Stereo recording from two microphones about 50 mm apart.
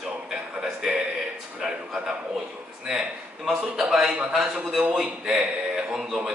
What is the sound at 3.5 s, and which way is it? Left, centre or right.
A man's voice, centre.